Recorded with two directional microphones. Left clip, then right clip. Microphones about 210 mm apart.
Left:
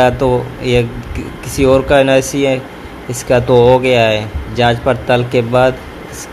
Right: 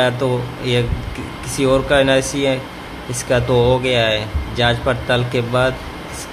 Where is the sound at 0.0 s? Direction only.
20° left (ahead or behind).